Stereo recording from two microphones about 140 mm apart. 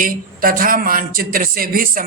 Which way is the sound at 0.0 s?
90° right.